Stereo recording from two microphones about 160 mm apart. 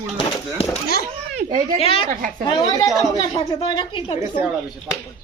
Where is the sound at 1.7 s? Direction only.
35° left (ahead or behind).